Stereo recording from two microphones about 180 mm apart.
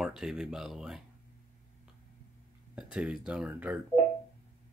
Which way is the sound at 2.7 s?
5° right (ahead or behind).